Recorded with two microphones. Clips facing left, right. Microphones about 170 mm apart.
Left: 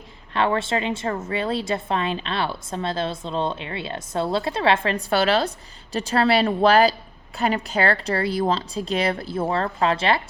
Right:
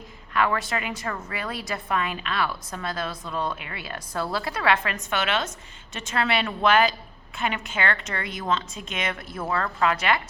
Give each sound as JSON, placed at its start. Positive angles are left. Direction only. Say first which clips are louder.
{"t": 0.3, "sound": "a woman's voice", "louder": "left 3 dB", "side_deg": 30}